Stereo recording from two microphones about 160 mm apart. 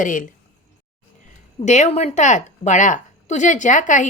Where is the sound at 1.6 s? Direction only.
45° left (ahead or behind).